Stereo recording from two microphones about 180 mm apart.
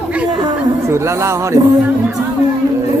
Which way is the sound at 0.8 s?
15° right (ahead or behind).